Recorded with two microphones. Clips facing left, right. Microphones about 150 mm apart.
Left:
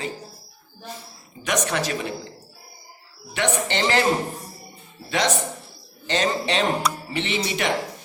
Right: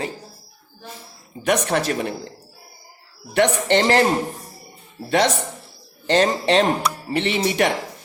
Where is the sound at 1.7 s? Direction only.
55° right (ahead or behind).